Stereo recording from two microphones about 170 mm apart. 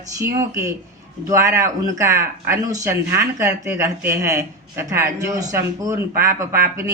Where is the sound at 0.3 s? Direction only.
20° right (ahead or behind).